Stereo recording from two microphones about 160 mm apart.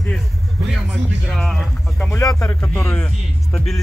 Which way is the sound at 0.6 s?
Centre (ahead or behind).